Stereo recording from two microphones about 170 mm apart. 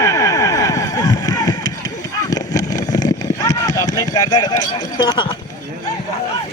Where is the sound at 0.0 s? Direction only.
20° left (ahead or behind).